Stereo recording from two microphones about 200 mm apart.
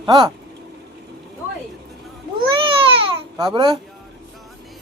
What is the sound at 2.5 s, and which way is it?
Babbling, 25° right (ahead or behind).